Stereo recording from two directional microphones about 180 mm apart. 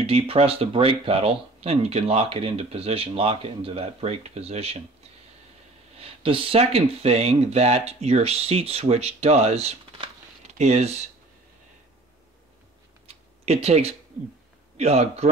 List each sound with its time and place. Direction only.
0.0 s speech: 35° right (ahead or behind)
5.9 s speech: 30° right (ahead or behind)
13.0 s a sound: 35° right (ahead or behind)
14.8 s speech: 35° right (ahead or behind)